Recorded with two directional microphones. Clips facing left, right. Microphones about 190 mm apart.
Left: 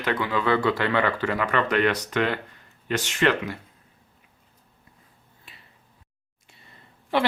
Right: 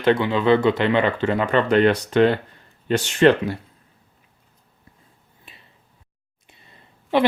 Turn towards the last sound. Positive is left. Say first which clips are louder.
# right 5 dB
turn(degrees=-20)  # may be behind; listen again after turning